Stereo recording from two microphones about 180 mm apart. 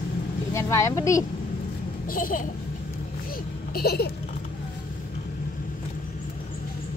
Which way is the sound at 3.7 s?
60° left (ahead or behind).